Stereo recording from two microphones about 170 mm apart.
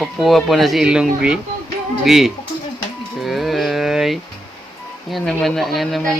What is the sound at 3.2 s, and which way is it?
Music, centre (ahead or behind).